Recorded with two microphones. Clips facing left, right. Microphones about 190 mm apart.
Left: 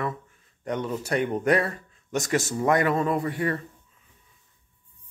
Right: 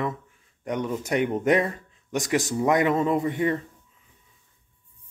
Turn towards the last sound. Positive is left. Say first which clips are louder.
# right 2 dB
turn(degrees=-20)  # may be behind; listen again after turning